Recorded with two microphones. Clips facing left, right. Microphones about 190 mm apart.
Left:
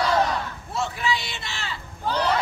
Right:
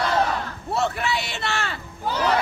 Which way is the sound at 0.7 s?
65° right (ahead or behind).